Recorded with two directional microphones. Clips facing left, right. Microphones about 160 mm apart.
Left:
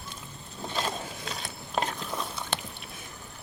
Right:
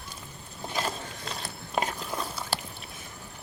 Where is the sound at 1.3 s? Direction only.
Centre (ahead or behind).